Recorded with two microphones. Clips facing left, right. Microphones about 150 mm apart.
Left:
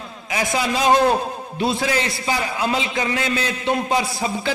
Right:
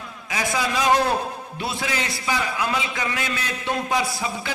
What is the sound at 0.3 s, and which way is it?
A man's voice, 25° left (ahead or behind).